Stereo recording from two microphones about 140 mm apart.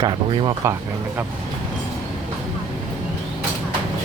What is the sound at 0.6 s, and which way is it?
Speech, 20° right (ahead or behind).